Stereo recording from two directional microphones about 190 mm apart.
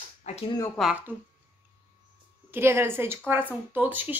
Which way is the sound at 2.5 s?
10° right (ahead or behind).